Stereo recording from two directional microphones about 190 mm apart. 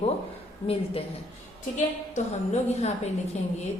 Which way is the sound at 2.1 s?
35° left (ahead or behind).